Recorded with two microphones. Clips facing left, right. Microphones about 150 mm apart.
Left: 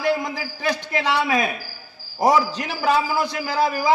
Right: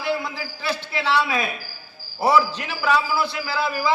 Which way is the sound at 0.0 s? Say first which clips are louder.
Left 3 dB; 45° left (ahead or behind).